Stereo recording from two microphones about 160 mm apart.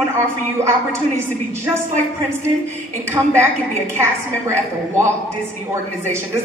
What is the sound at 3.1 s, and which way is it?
A woman's voice, 15° right (ahead or behind).